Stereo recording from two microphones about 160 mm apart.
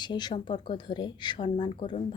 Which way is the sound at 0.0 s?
25° left (ahead or behind).